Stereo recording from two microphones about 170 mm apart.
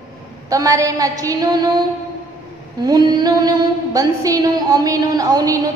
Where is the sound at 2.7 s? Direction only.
25° right (ahead or behind).